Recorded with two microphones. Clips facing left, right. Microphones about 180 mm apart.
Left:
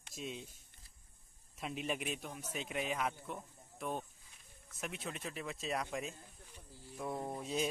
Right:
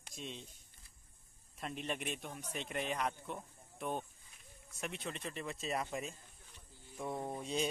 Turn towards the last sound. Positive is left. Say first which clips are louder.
# even
turn(degrees=5)  # may be behind; listen again after turning